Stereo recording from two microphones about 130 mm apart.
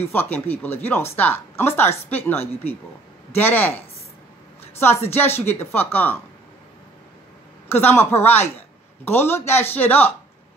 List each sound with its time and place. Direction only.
0.0 s a woman's voice: 15° left (ahead or behind)
7.6 s a woman's voice: 15° left (ahead or behind)